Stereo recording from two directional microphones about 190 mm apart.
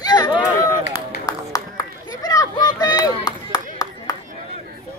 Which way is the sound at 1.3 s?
20° left (ahead or behind).